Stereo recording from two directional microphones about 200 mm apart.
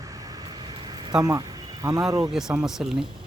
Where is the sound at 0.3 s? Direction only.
20° right (ahead or behind).